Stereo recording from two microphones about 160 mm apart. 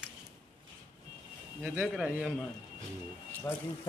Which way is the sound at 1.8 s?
Centre (ahead or behind).